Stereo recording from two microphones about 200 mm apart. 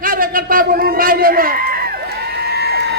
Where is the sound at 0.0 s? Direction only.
45° right (ahead or behind).